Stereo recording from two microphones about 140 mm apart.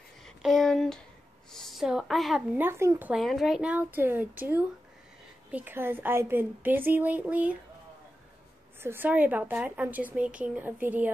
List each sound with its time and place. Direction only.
0.2 s a sound: centre (ahead or behind)
1.5 s a woman's voice: centre (ahead or behind)
2.5 s a woman's voice: 15° right (ahead or behind)
3.1 s a woman's voice: centre (ahead or behind)
8.8 s a woman's voice: 15° right (ahead or behind)